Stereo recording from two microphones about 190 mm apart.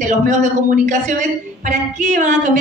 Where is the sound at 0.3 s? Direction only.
40° right (ahead or behind).